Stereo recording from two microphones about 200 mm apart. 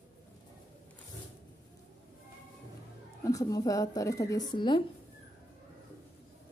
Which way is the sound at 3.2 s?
15° left (ahead or behind).